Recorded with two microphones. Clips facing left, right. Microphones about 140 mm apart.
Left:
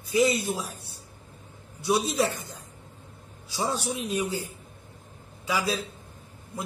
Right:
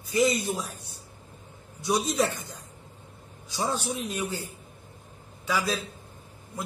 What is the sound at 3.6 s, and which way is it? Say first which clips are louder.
Speech: even; 10° left (ahead or behind).